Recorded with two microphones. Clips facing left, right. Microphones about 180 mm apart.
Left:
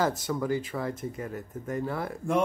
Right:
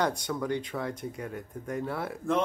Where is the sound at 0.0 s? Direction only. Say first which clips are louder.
Left 2 dB; 5° left (ahead or behind).